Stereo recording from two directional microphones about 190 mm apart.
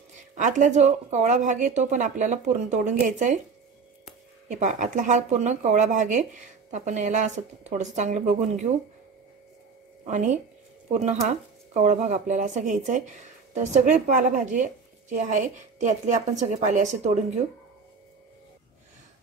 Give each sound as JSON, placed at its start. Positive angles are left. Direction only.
{"t": 0.3, "sound": "speech", "side_deg": -40}
{"t": 4.5, "sound": "speech", "side_deg": -40}
{"t": 10.0, "sound": "speech", "side_deg": -40}